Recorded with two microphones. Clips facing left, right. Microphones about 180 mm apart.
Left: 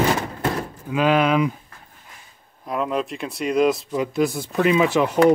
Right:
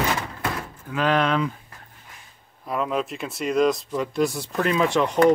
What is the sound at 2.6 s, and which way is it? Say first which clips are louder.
Speech: left 1 dB; centre (ahead or behind).